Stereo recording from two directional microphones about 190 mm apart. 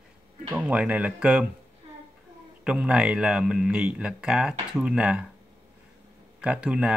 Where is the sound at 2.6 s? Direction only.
5° right (ahead or behind).